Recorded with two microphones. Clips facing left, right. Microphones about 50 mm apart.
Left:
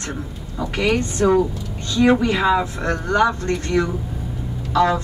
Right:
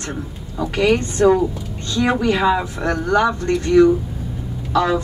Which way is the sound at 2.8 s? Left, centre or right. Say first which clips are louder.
Right 1 dB; right.